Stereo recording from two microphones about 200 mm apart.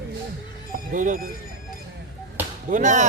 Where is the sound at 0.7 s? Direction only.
40° right (ahead or behind).